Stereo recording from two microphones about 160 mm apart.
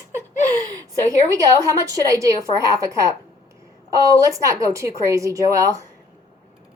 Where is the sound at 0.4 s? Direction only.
20° right (ahead or behind).